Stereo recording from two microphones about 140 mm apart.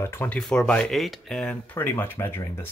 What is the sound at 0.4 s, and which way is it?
Speech, 5° left (ahead or behind).